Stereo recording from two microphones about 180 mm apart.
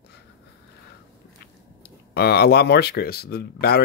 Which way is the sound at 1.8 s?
65° left (ahead or behind).